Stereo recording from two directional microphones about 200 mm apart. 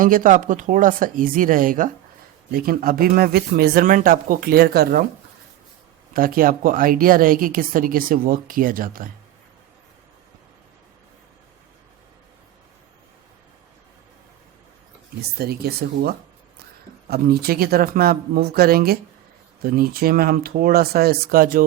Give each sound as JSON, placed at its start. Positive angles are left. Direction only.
{"t": 0.0, "sound": "a woman's voice", "side_deg": -40}
{"t": 6.1, "sound": "a woman's voice", "side_deg": -45}
{"t": 15.4, "sound": "a woman's voice", "side_deg": -50}